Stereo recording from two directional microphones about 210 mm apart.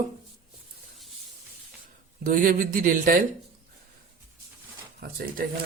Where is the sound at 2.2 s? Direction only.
40° right (ahead or behind).